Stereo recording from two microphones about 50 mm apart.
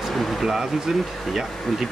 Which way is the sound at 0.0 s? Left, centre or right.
Centre.